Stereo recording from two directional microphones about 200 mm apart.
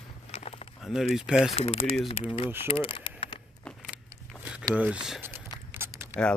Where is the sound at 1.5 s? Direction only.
30° left (ahead or behind).